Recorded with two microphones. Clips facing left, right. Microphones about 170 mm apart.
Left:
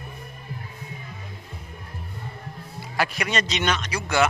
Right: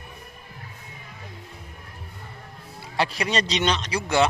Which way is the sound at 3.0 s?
30° right (ahead or behind).